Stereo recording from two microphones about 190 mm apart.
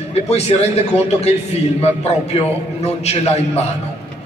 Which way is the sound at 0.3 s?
35° left (ahead or behind).